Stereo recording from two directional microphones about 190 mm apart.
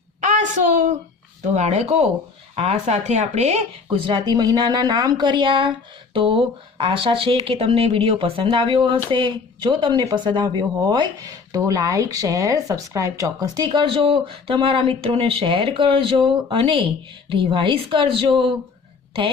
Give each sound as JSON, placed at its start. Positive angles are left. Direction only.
{"t": 0.2, "sound": "a woman's voice", "side_deg": -40}